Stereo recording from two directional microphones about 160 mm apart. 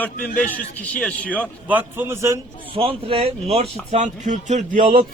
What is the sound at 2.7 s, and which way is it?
Speech, 35° right (ahead or behind).